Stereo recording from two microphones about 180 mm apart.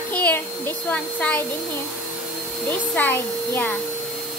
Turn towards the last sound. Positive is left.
turn(degrees=10)  # may be behind; listen again after turning